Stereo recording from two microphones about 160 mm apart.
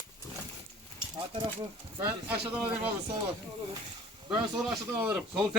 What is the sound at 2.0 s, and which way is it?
Speech, 10° right (ahead or behind).